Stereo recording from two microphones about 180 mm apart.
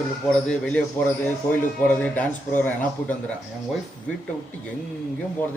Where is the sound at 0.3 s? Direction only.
5° left (ahead or behind).